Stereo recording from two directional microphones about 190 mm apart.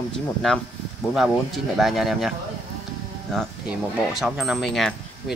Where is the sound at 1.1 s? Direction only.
Centre (ahead or behind).